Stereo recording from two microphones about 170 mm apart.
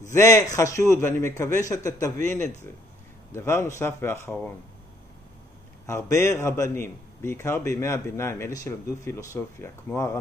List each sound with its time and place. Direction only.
0.1 s a man's voice: 15° left (ahead or behind)
5.9 s a man's voice: 20° left (ahead or behind)